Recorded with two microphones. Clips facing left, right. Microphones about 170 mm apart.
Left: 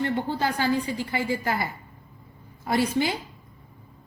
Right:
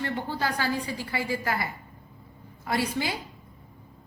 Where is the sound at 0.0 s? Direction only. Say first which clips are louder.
Left 4 dB; 25° left (ahead or behind).